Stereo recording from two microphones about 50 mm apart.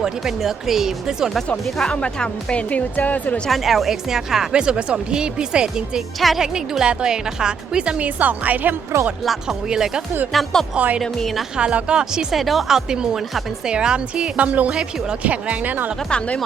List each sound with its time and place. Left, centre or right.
0.0 s speech: centre
1.9 s speech: centre; by 3.4 s left
3.5 s speech: centre
6.1 s a woman's voice: centre
6.4 s speech: centre; by 8.7 s right
8.9 s speech: right
9.2 s a woman's voice: centre
9.6 s speech: centre
10.3 s a woman's voice: centre
11.5 s speech: centre
12.3 s speech: centre
14.3 s speech: right
16.0 s speech: left